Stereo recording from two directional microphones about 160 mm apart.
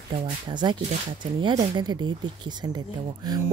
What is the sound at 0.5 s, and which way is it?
Speech, 30° right (ahead or behind).